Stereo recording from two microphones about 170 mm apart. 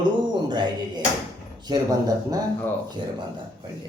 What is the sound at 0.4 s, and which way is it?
Music, 25° right (ahead or behind).